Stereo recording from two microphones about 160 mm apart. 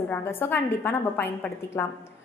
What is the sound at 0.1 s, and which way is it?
A woman's voice, 15° left (ahead or behind).